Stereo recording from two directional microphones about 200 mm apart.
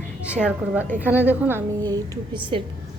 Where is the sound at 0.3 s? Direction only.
5° right (ahead or behind).